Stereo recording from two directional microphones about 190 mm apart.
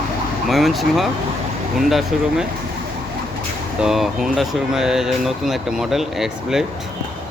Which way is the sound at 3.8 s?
Centre (ahead or behind).